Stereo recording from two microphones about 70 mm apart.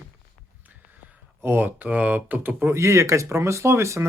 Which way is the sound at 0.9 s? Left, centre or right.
Right.